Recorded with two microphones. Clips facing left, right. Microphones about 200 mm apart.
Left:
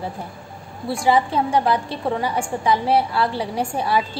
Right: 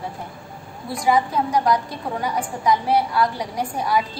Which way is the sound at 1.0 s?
30° left (ahead or behind).